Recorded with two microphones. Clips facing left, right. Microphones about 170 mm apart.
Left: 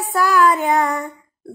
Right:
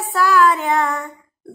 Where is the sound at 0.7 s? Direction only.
15° left (ahead or behind).